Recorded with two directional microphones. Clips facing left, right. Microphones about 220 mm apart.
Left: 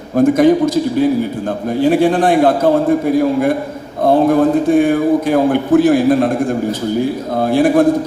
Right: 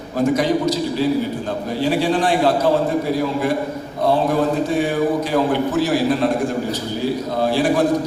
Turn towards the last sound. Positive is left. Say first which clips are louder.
# left 6 dB
turn(degrees=55)  # may be behind; listen again after turning